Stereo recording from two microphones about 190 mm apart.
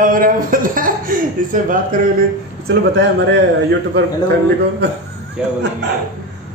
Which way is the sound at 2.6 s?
65° right (ahead or behind).